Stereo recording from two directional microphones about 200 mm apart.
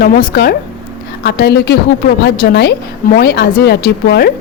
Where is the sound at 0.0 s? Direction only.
50° left (ahead or behind).